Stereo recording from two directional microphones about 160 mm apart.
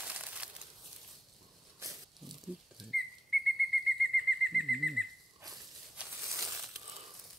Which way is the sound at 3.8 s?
Centre (ahead or behind).